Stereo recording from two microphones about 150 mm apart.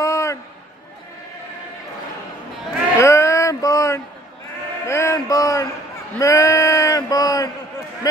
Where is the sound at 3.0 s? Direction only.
20° left (ahead or behind).